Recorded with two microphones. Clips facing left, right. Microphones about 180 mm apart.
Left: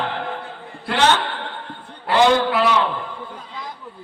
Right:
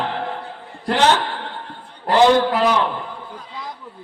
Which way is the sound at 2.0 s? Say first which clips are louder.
Right 2 dB; 40° right (ahead or behind).